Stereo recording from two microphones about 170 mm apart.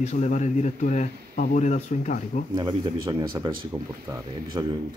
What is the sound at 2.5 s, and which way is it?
Speech, 25° right (ahead or behind).